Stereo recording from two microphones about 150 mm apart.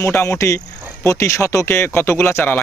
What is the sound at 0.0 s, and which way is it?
Speech, 20° left (ahead or behind).